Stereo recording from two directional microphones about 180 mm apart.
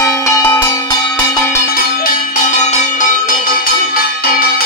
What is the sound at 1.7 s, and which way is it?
Music, 50° left (ahead or behind).